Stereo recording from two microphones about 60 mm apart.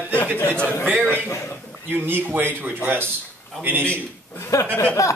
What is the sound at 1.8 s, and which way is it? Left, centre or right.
A man's voice, right.